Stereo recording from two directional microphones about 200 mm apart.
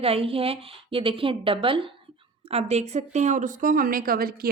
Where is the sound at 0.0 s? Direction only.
30° right (ahead or behind).